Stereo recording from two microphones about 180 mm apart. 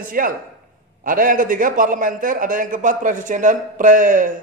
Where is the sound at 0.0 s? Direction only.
50° right (ahead or behind).